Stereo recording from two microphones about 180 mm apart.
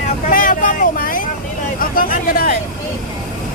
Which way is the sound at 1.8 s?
50° left (ahead or behind).